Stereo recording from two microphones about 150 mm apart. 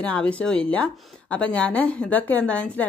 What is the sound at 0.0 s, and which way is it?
Speech, 10° left (ahead or behind).